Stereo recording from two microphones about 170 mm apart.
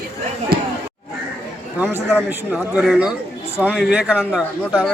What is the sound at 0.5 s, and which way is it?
Speech, 65° right (ahead or behind).